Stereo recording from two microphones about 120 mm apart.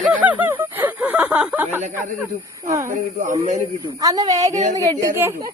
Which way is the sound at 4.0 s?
30° right (ahead or behind).